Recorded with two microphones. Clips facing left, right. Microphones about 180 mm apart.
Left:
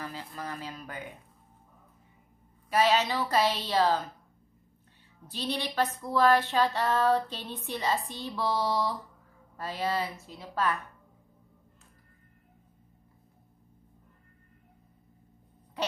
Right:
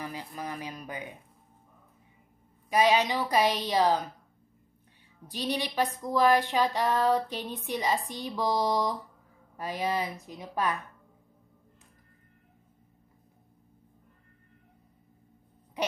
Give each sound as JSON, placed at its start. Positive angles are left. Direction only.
{"t": 0.0, "sound": "speech", "side_deg": -15}
{"t": 2.7, "sound": "speech", "side_deg": -15}
{"t": 5.2, "sound": "speech", "side_deg": -15}
{"t": 15.8, "sound": "a sound", "side_deg": -15}